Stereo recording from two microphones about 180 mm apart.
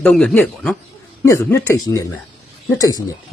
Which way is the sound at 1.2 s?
15° left (ahead or behind).